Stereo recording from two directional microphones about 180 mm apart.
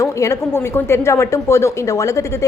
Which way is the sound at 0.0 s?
20° left (ahead or behind).